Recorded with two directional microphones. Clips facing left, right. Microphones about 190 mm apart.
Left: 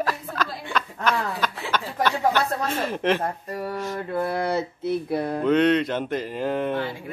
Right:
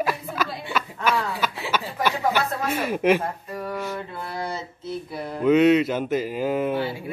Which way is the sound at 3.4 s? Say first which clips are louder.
Left 1 dB; 45° left (ahead or behind).